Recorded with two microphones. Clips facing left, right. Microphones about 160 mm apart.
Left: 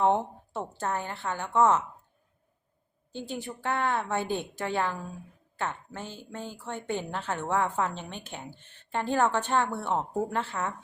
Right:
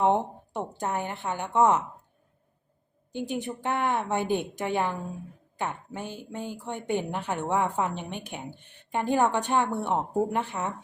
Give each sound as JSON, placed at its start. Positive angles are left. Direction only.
{"t": 0.0, "sound": "a woman's voice", "side_deg": -15}
{"t": 3.1, "sound": "a woman's voice", "side_deg": -15}